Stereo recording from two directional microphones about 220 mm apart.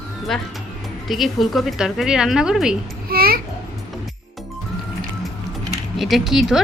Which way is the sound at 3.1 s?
45° right (ahead or behind).